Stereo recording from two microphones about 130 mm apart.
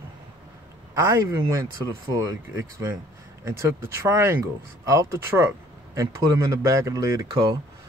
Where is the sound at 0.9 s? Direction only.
25° right (ahead or behind).